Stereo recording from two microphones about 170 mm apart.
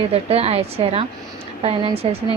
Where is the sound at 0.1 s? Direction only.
35° right (ahead or behind).